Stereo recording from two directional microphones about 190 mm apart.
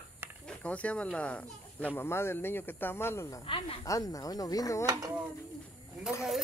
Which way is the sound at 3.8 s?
15° left (ahead or behind).